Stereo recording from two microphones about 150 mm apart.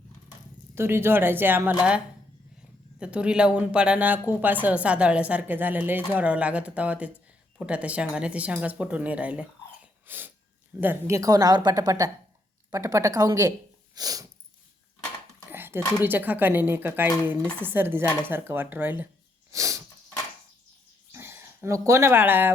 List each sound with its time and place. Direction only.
0.8 s speech: 15° right (ahead or behind)
3.0 s a woman's voice: 5° right (ahead or behind); by 14.3 s 25° right (ahead or behind)
15.4 s dishes: 15° right (ahead or behind)
16.0 s speech: 10° right (ahead or behind)
19.5 s a sound: 20° right (ahead or behind)
21.1 s speech: 15° right (ahead or behind)